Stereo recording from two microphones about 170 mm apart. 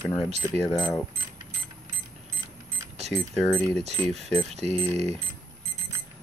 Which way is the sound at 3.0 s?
5° left (ahead or behind).